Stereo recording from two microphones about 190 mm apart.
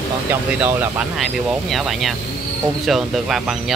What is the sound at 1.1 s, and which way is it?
Speech, centre (ahead or behind).